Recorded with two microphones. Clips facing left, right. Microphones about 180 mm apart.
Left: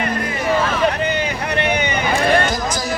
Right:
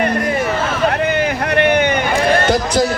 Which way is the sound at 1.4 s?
55° right (ahead or behind).